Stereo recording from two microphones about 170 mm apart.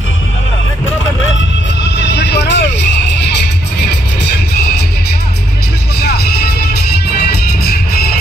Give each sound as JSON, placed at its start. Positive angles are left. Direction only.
{"t": 2.0, "sound": "vehicle", "side_deg": 90}
{"t": 4.2, "sound": "music", "side_deg": 70}
{"t": 5.9, "sound": "music", "side_deg": 70}
{"t": 7.6, "sound": "music", "side_deg": 65}